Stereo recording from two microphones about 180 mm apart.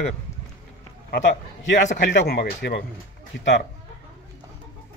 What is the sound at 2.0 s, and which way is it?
Speech, 70° left (ahead or behind).